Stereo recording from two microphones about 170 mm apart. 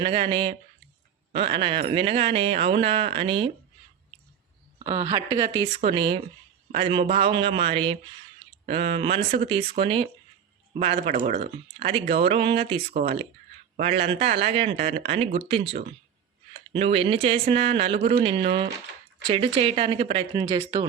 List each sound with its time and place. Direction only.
0.0 s speech: 30° right (ahead or behind)
4.8 s speech: 25° right (ahead or behind)
16.7 s speech: 35° right (ahead or behind)